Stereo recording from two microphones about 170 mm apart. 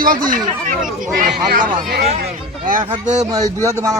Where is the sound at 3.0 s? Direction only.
45° right (ahead or behind).